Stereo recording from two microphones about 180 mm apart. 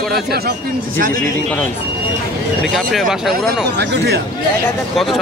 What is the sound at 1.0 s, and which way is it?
Speech, 50° right (ahead or behind).